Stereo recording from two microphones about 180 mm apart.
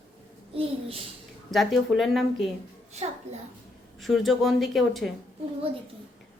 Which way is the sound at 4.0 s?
Centre (ahead or behind).